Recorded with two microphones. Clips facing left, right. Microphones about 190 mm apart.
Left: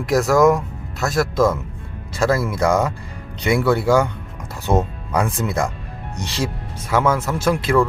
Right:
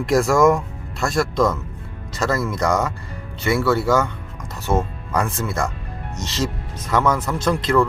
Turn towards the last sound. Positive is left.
turn(degrees=10)  # may be behind; listen again after turning